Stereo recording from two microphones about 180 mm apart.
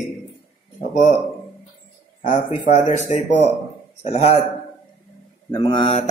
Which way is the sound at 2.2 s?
45° left (ahead or behind).